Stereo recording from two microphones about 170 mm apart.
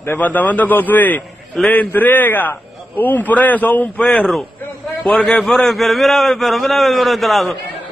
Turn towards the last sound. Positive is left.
turn(degrees=0)  # may be behind; listen again after turning